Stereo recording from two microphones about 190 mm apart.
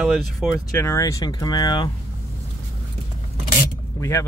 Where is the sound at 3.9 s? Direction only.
15° left (ahead or behind).